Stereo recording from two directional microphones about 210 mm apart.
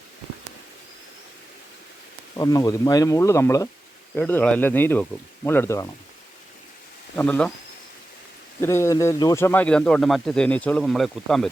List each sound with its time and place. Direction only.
2.3 s speech: 15° left (ahead or behind)
7.2 s speech: 5° left (ahead or behind)
8.6 s a man's voice: 15° left (ahead or behind)